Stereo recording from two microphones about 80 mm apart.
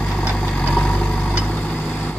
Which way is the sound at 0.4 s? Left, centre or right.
Centre.